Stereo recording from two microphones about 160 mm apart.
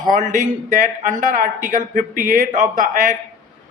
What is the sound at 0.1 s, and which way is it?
A man's voice, 50° right (ahead or behind).